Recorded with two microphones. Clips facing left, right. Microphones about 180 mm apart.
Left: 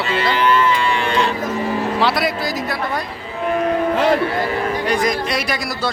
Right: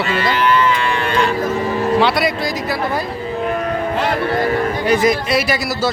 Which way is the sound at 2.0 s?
Centre (ahead or behind).